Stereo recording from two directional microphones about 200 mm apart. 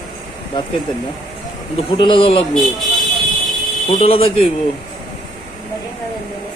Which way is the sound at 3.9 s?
30° left (ahead or behind).